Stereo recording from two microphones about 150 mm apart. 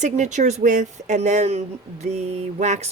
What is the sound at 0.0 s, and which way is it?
Speech, 55° right (ahead or behind).